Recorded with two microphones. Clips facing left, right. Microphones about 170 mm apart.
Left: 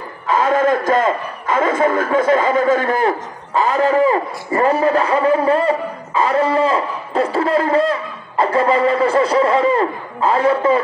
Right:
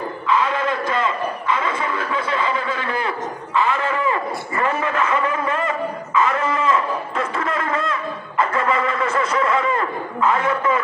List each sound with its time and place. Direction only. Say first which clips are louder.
0.3 s a man's voice: left 6 dB; 45° left (ahead or behind)